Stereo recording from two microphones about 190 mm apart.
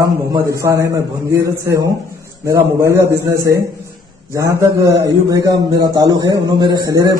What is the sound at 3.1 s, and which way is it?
Speech, 55° right (ahead or behind).